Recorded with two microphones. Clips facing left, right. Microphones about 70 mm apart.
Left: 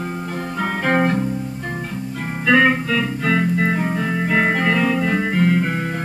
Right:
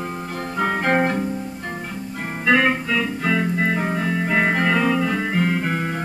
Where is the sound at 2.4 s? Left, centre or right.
Centre.